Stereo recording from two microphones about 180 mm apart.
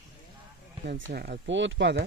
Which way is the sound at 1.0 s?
55° right (ahead or behind).